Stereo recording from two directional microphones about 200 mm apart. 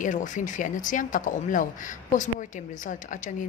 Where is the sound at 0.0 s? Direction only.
40° left (ahead or behind).